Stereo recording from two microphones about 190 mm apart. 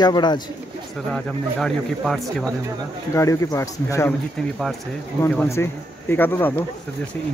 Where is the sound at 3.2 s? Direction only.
15° left (ahead or behind).